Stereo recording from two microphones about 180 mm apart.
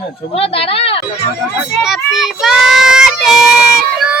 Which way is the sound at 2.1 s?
Centre (ahead or behind).